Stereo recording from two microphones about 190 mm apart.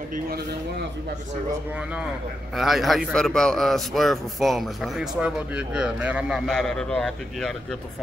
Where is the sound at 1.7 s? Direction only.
5° right (ahead or behind).